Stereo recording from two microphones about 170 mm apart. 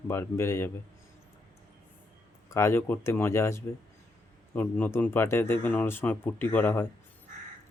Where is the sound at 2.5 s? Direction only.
15° left (ahead or behind).